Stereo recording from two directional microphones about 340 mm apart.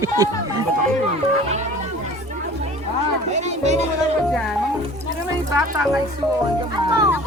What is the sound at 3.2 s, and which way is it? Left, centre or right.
Music, centre.